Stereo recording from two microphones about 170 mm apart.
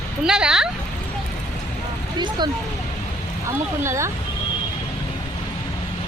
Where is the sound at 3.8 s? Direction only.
15° right (ahead or behind).